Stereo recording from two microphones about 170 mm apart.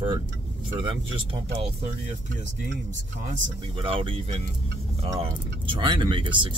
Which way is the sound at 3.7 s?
30° right (ahead or behind).